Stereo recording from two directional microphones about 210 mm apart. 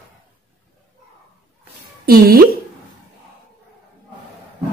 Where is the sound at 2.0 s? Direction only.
45° right (ahead or behind).